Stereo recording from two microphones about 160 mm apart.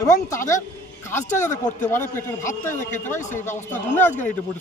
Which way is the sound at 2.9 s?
50° left (ahead or behind).